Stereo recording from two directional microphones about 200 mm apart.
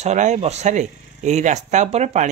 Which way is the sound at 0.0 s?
35° right (ahead or behind).